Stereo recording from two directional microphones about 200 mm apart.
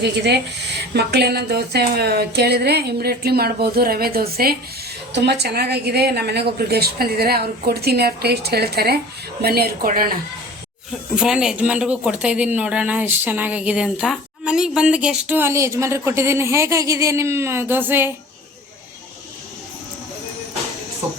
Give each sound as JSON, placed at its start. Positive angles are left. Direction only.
{"t": 0.0, "sound": "a woman's voice", "side_deg": -55}
{"t": 11.1, "sound": "speech", "side_deg": -5}